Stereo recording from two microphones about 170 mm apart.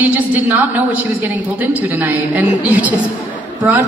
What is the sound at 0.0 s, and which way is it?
A woman's voice, 10° right (ahead or behind).